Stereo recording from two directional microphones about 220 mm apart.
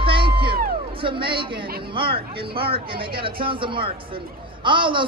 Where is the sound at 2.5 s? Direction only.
25° right (ahead or behind).